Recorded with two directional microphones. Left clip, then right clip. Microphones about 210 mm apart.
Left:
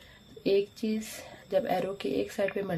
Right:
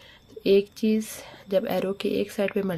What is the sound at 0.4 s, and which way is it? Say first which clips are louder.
Speech: right 6 dB; 35° right (ahead or behind).